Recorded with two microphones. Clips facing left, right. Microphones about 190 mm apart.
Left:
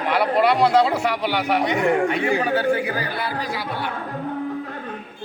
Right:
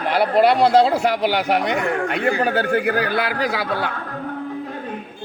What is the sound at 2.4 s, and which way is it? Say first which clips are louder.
Speech: right 1 dB; 65° right (ahead or behind).